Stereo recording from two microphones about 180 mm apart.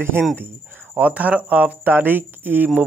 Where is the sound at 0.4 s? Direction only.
10° right (ahead or behind).